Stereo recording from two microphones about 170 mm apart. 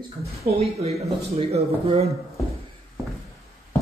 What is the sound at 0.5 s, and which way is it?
Speech, 35° right (ahead or behind).